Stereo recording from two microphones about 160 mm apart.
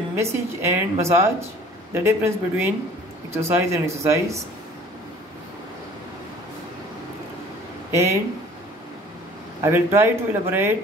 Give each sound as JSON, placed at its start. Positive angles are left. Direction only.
{"t": 0.1, "sound": "a woman's voice", "side_deg": -15}
{"t": 7.9, "sound": "speech", "side_deg": -15}
{"t": 9.6, "sound": "a woman's voice", "side_deg": -15}